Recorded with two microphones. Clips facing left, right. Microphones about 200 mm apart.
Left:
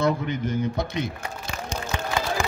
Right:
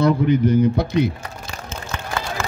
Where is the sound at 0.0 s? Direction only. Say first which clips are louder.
Right 8 dB; 35° right (ahead or behind).